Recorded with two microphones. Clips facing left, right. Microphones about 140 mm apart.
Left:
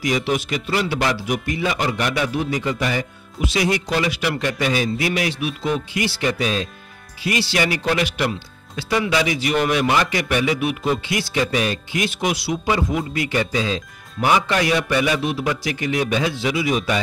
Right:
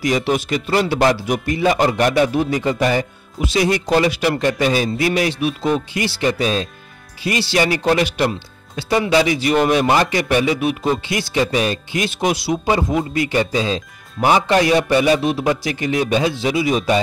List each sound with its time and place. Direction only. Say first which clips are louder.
0.0 s speech: right 3 dB; 40° right (ahead or behind)